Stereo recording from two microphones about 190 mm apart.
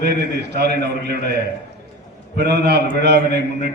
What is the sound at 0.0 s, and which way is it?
A man's voice, 60° right (ahead or behind).